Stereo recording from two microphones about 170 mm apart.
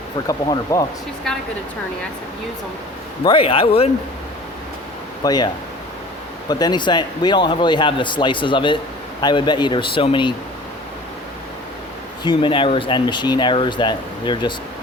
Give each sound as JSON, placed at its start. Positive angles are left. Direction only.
{"t": 0.3, "sound": "speech", "side_deg": 20}
{"t": 3.2, "sound": "a man's voice", "side_deg": 30}
{"t": 5.2, "sound": "speech", "side_deg": 25}
{"t": 6.5, "sound": "speech", "side_deg": 25}
{"t": 12.2, "sound": "speech", "side_deg": 30}